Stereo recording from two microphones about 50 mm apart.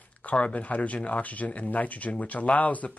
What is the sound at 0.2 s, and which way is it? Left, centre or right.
Speech, left.